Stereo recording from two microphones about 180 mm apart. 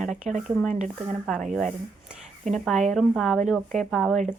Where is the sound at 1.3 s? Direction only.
Centre (ahead or behind).